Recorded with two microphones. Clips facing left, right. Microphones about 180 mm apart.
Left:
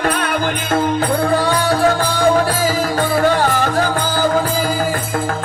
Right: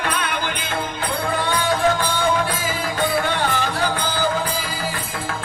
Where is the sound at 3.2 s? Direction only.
40° left (ahead or behind).